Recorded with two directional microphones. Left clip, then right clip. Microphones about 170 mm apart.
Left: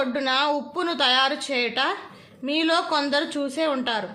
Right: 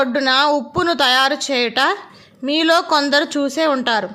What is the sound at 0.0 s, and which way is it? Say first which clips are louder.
Speech: right 7 dB; 40° right (ahead or behind).